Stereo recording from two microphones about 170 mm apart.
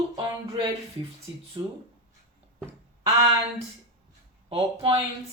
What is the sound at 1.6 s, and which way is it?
Speech, 25° right (ahead or behind).